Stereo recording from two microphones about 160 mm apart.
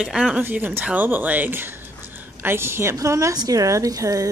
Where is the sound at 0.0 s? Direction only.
5° right (ahead or behind).